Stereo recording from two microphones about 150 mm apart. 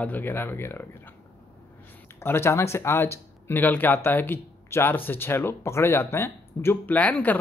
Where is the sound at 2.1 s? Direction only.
15° left (ahead or behind).